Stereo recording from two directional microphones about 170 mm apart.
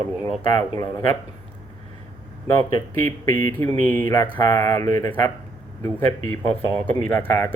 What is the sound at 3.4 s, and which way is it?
Speech, 15° left (ahead or behind).